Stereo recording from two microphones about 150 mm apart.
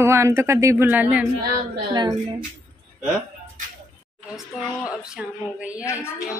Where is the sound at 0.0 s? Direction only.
15° right (ahead or behind).